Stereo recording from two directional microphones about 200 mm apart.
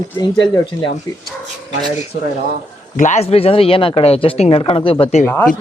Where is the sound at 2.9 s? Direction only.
35° left (ahead or behind).